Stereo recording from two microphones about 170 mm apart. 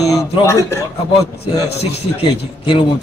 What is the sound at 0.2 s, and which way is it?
Speech, 20° left (ahead or behind).